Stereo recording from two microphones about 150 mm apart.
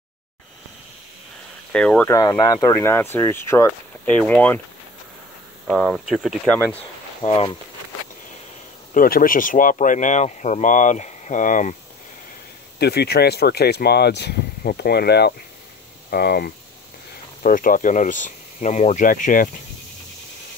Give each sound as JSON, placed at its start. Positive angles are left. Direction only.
{"t": 1.7, "sound": "speech", "side_deg": 5}
{"t": 2.0, "sound": "speech", "side_deg": 25}
{"t": 5.7, "sound": "speech", "side_deg": 0}
{"t": 6.5, "sound": "speech", "side_deg": 10}
{"t": 7.2, "sound": "speech", "side_deg": 40}
{"t": 8.9, "sound": "speech", "side_deg": 75}
{"t": 12.7, "sound": "speech", "side_deg": 90}
{"t": 17.4, "sound": "speech", "side_deg": 70}